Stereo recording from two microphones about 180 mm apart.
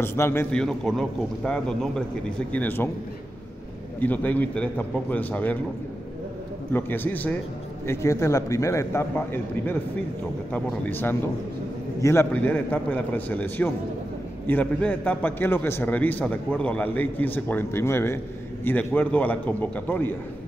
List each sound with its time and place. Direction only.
0.0 s a man's voice: 15° left (ahead or behind)
4.0 s a man's voice: 10° left (ahead or behind)
6.7 s a man's voice: 10° left (ahead or behind)